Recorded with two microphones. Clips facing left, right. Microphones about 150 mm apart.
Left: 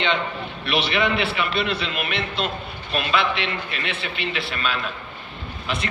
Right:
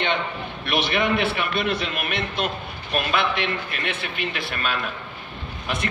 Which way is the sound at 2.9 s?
50° right (ahead or behind).